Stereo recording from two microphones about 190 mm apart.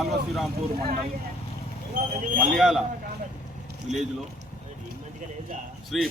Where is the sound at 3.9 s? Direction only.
35° right (ahead or behind).